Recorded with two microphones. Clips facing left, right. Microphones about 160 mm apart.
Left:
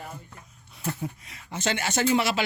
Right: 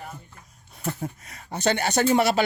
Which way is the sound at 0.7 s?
45° right (ahead or behind).